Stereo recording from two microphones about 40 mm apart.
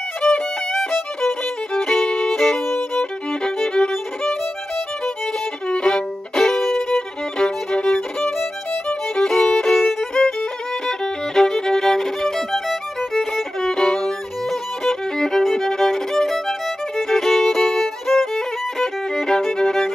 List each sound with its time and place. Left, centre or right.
0.2 s violin: centre
2.3 s violin: centre
3.0 s music: centre
4.2 s violin: centre